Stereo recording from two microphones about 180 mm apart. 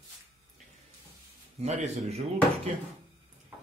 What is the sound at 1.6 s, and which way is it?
Speech, 40° right (ahead or behind).